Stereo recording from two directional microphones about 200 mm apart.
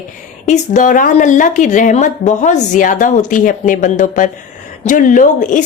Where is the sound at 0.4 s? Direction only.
35° left (ahead or behind).